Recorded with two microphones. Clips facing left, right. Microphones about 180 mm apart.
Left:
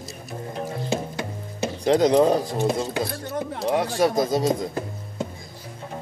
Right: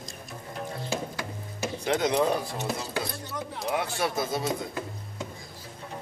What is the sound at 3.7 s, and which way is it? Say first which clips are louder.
Speech: left 8 dB; 35° left (ahead or behind).